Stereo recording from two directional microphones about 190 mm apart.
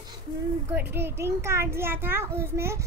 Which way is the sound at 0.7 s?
10° right (ahead or behind).